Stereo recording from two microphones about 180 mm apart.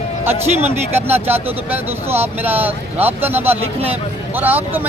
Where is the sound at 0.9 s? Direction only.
10° right (ahead or behind).